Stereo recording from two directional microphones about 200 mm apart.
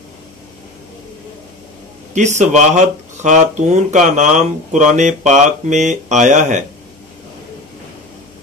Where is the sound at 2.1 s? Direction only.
35° right (ahead or behind).